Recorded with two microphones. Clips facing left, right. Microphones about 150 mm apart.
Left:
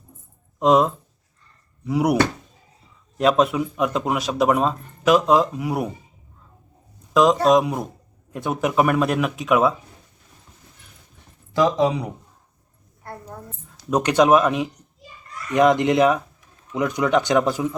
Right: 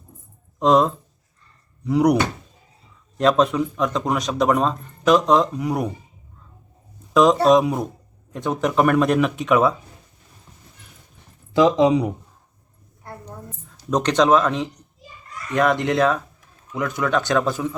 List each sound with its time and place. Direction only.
0.6 s speech: 5° left (ahead or behind)
3.2 s speech: 5° left (ahead or behind)
7.1 s speech: centre (ahead or behind)
11.5 s speech: 20° right (ahead or behind)
13.9 s speech: 10° left (ahead or behind)